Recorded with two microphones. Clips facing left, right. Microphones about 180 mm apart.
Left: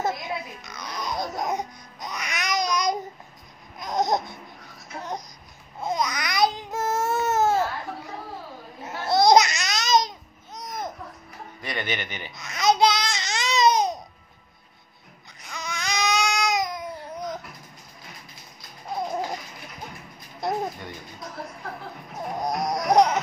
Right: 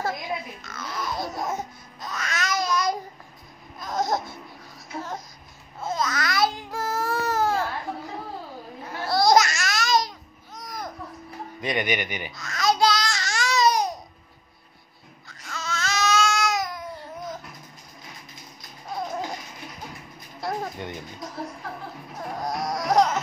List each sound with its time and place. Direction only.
0.6 s babbling: 15° left (ahead or behind)
3.8 s laughter: 20° left (ahead or behind)
5.8 s babbling: 15° left (ahead or behind)
8.8 s babbling: 20° left (ahead or behind)
11.6 s speech: 15° right (ahead or behind)
12.3 s babbling: 20° left (ahead or behind)
15.2 s babbling: 15° left (ahead or behind)
20.3 s a sound: 20° left (ahead or behind)
22.4 s music: 20° left (ahead or behind)